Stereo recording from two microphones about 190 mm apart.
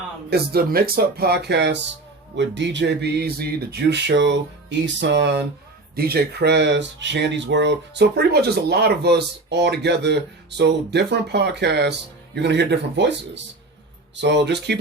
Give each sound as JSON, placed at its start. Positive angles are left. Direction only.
{"t": 0.3, "sound": "speech", "side_deg": -55}